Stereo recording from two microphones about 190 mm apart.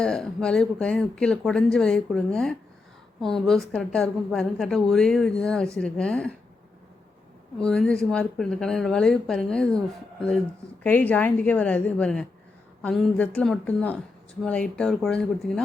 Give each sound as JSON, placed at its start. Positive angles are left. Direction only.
{"t": 0.0, "sound": "a woman's voice", "side_deg": 5}
{"t": 7.6, "sound": "a woman's voice", "side_deg": 5}